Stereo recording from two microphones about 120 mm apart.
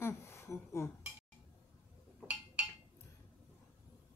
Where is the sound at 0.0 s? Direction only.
20° left (ahead or behind).